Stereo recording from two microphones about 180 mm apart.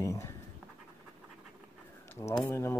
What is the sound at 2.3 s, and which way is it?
Speech, 10° left (ahead or behind).